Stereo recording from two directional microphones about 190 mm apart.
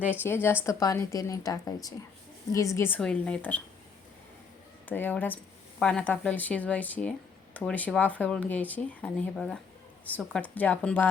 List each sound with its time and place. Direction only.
0.1 s speech: 10° left (ahead or behind)
4.9 s speech: 10° left (ahead or behind)